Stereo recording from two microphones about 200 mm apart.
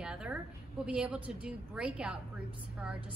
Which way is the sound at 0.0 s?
5° right (ahead or behind).